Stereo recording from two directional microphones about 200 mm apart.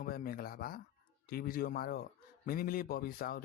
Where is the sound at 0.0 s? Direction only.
45° left (ahead or behind).